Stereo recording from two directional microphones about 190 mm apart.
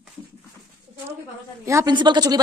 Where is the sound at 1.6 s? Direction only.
20° right (ahead or behind).